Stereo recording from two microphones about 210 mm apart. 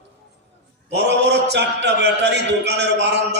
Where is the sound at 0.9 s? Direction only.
55° right (ahead or behind).